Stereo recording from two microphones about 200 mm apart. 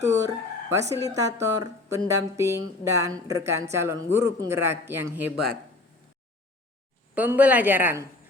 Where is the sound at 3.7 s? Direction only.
15° right (ahead or behind).